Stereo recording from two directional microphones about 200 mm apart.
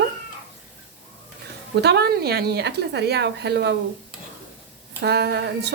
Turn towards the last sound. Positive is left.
turn(degrees=-55)  # may be behind; listen again after turning